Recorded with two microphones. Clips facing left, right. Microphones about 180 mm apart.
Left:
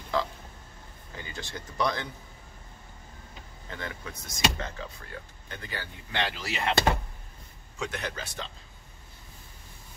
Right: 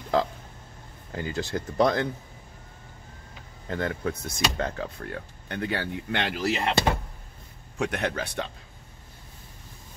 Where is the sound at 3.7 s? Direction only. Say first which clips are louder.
Right 10 dB; 50° right (ahead or behind).